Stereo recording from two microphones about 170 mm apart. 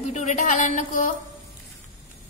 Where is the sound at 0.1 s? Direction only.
45° left (ahead or behind).